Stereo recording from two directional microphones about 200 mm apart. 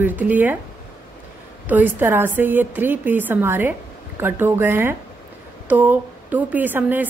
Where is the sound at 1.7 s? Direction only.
10° right (ahead or behind).